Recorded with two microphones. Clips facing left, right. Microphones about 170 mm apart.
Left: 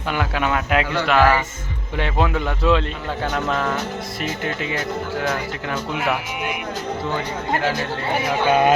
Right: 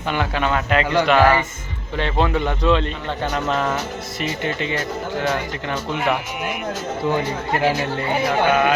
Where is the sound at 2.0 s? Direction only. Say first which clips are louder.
Right 1 dB; 5° left (ahead or behind).